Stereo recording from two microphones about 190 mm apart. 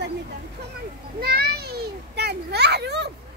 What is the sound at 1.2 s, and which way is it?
Children playing, 55° right (ahead or behind).